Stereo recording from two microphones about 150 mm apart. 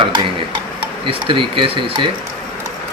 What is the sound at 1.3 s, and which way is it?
Speech, 35° right (ahead or behind).